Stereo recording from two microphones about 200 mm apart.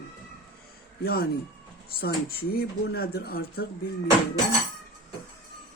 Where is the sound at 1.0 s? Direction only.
50° left (ahead or behind).